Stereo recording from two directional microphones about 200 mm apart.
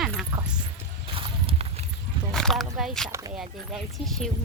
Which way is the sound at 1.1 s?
30° right (ahead or behind).